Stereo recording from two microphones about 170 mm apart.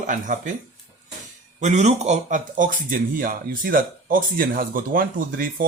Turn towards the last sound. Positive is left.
turn(degrees=-55)  # may be behind; listen again after turning